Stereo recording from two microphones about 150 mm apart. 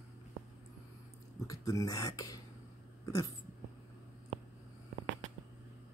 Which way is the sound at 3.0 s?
25° left (ahead or behind).